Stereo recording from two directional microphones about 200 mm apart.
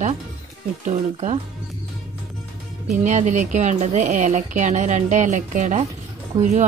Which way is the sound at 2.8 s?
35° right (ahead or behind).